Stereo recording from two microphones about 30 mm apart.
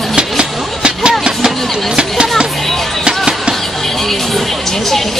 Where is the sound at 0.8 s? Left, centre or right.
Right.